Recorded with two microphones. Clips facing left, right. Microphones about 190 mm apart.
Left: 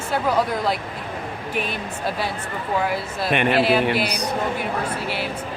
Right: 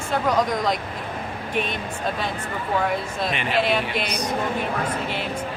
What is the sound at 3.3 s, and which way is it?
Speech, 60° left (ahead or behind).